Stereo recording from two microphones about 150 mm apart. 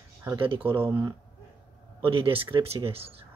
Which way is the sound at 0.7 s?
15° right (ahead or behind).